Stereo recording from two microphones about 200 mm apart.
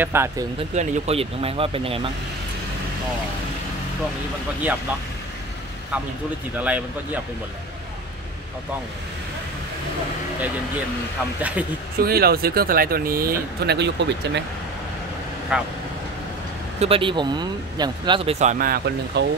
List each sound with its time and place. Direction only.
0.0 s speech: 10° right (ahead or behind)
0.7 s speech: 30° right (ahead or behind)
6.5 s speech: 5° right (ahead or behind)
12.0 s speech: 50° right (ahead or behind)
15.5 s speech: 5° right (ahead or behind)
16.8 s speech: 25° right (ahead or behind); by 19.2 s 45° right (ahead or behind)